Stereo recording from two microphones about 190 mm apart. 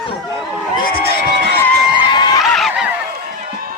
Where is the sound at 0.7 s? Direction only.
50° left (ahead or behind).